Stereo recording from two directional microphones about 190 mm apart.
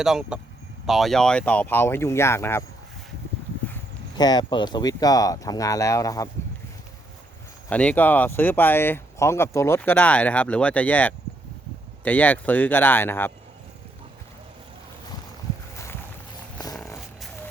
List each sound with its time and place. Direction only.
0.0 s speech: 5° right (ahead or behind); by 2.6 s 15° left (ahead or behind)
4.2 s speech: 20° left (ahead or behind)
7.7 s speech: 5° left (ahead or behind)